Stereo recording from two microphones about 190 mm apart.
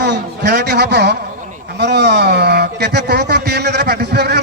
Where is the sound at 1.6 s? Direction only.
60° right (ahead or behind).